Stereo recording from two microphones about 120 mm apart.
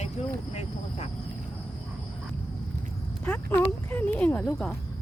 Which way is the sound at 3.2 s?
15° left (ahead or behind).